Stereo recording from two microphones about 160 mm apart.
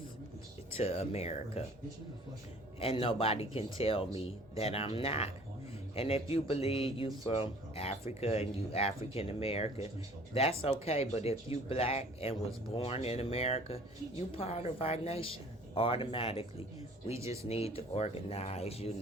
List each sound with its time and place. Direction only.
0.7 s speech: 40° left (ahead or behind)
2.7 s speech: 35° left (ahead or behind)
17.2 s speech: 20° right (ahead or behind)
17.5 s speech: 40° left (ahead or behind)